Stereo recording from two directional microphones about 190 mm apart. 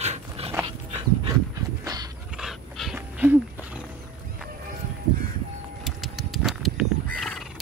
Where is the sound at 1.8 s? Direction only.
20° right (ahead or behind).